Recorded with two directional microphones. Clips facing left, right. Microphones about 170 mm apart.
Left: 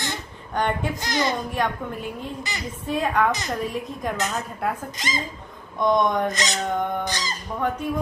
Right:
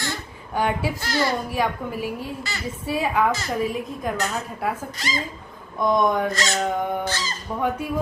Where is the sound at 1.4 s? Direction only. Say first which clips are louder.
Right 1 dB; 5° right (ahead or behind).